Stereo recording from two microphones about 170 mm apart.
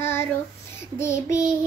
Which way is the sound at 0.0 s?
15° left (ahead or behind).